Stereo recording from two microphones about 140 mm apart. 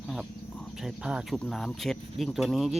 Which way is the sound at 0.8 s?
5° right (ahead or behind).